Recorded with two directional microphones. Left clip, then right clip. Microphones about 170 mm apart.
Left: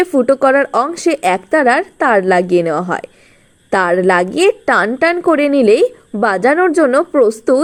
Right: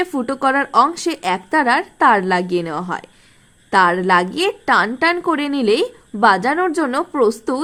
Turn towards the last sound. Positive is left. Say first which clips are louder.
# left 6 dB
turn(degrees=20)  # may be behind; listen again after turning